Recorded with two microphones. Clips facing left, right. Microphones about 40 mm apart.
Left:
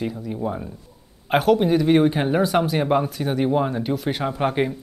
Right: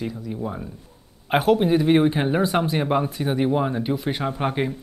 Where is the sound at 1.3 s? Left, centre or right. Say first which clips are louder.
Left 1 dB; centre.